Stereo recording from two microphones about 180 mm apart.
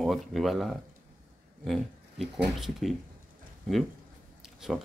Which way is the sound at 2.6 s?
Centre (ahead or behind).